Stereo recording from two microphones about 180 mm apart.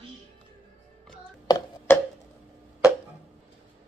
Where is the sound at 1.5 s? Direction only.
20° left (ahead or behind).